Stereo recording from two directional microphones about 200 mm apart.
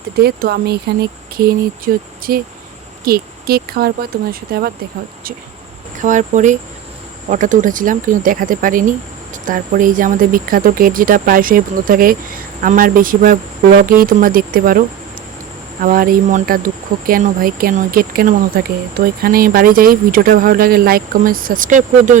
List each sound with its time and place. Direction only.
0.2 s speech: 55° right (ahead or behind)
6.0 s speech: 40° right (ahead or behind)